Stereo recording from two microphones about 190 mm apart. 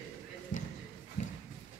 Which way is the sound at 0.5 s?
40° left (ahead or behind).